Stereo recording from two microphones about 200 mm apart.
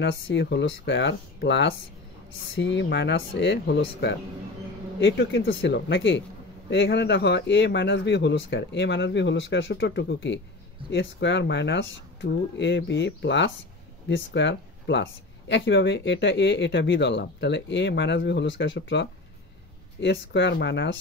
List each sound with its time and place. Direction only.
0.0 s speech: 60° left (ahead or behind)